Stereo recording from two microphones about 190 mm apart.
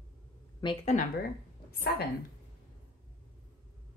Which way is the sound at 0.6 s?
25° left (ahead or behind).